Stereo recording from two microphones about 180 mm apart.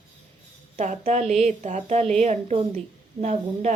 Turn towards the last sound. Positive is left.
turn(degrees=-40)  # may be behind; listen again after turning